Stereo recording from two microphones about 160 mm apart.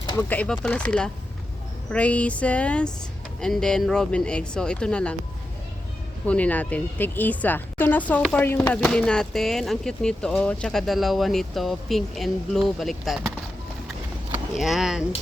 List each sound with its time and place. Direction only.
0.0 s a sound: 25° left (ahead or behind)
0.3 s a woman's voice: 10° left (ahead or behind)
6.2 s a woman's voice: 10° left (ahead or behind)
14.3 s speech: 5° right (ahead or behind)